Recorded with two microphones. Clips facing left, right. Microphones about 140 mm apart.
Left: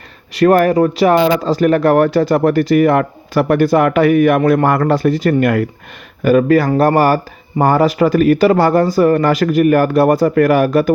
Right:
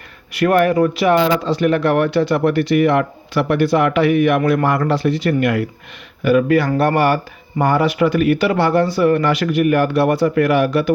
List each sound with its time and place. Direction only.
0.3 s speech: 35° left (ahead or behind)